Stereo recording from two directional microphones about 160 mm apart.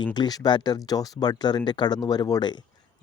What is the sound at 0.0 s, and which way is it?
Speech, 25° left (ahead or behind).